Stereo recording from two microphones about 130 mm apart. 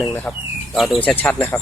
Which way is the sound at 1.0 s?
10° left (ahead or behind).